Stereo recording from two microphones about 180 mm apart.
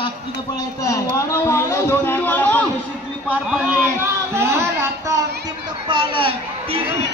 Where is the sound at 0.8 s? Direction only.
15° left (ahead or behind).